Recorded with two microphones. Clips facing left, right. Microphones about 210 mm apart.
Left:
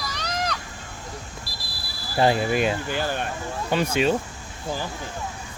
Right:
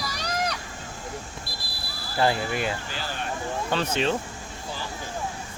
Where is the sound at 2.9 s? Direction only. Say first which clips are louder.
Left 7 dB; 55° left (ahead or behind).